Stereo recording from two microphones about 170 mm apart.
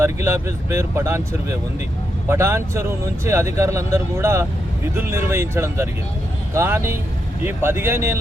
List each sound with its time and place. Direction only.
0.0 s speech: 15° right (ahead or behind)